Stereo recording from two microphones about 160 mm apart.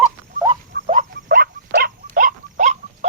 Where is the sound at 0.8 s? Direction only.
45° right (ahead or behind).